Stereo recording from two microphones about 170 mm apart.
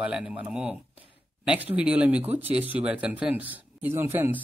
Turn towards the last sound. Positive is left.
turn(degrees=-10)  # may be behind; listen again after turning